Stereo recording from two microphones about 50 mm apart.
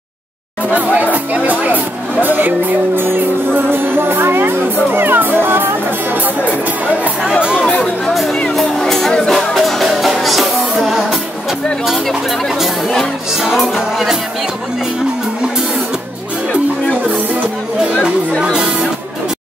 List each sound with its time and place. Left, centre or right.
0.7 s speech: right
1.1 s music: right
2.2 s speech: right
3.0 s music: right
7.5 s music: left
8.1 s music: centre
11.8 s speech: centre
13.4 s music: centre
18.4 s music: right